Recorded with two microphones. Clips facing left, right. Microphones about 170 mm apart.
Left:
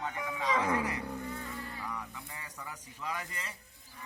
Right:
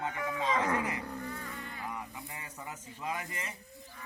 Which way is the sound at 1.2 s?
20° left (ahead or behind).